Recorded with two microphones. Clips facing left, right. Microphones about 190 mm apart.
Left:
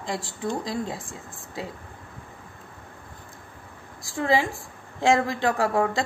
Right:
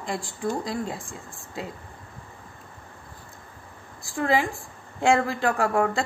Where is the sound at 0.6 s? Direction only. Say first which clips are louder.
Even; 20° left (ahead or behind).